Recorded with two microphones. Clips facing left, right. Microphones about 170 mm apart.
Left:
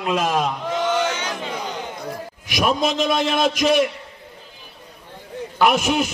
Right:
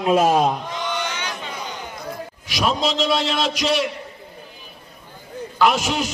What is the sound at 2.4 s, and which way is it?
A man's voice, 55° left (ahead or behind).